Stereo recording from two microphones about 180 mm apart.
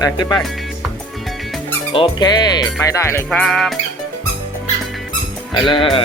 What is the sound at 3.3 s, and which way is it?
Music, centre (ahead or behind).